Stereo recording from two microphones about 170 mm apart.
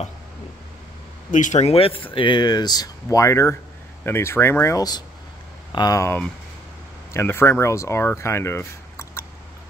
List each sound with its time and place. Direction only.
1.3 s speech: 45° left (ahead or behind); by 9.2 s 15° left (ahead or behind)